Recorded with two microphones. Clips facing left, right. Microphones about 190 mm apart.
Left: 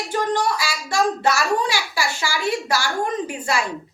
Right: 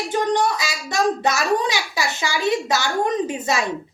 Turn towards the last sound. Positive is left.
turn(degrees=-20)  # may be behind; listen again after turning